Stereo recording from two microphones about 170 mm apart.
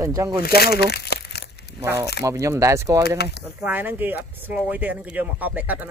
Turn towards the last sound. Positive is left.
turn(degrees=-10)  # may be behind; listen again after turning